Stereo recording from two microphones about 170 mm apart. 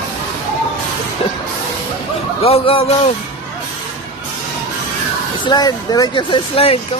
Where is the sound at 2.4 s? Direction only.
35° left (ahead or behind).